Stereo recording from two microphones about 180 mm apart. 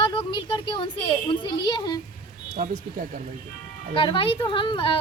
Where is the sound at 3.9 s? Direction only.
30° left (ahead or behind).